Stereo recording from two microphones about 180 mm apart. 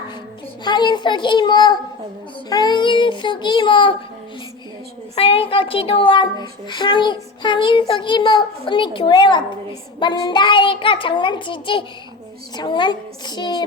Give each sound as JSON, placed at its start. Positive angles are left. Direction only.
{"t": 0.6, "sound": "a child's voice", "side_deg": 25}
{"t": 5.1, "sound": "a child's voice", "side_deg": 30}